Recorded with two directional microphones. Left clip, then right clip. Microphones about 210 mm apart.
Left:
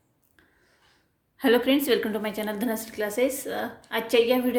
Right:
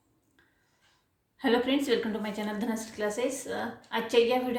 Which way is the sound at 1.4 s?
35° left (ahead or behind).